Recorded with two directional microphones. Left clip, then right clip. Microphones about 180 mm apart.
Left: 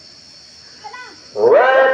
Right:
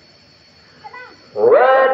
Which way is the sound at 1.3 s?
40° left (ahead or behind).